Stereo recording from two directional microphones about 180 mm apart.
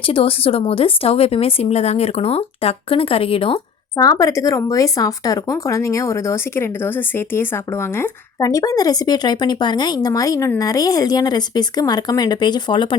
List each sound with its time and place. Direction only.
0.0 s speech: 30° left (ahead or behind)
3.9 s speech: 20° left (ahead or behind)